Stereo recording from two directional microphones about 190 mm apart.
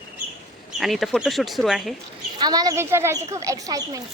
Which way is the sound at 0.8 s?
Centre (ahead or behind).